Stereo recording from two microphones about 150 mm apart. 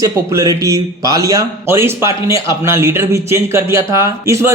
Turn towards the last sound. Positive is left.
turn(degrees=-20)  # may be behind; listen again after turning